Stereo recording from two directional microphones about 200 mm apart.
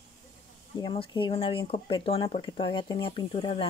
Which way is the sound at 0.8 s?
25° left (ahead or behind).